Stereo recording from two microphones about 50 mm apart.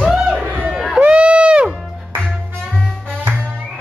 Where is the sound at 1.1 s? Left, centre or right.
Right.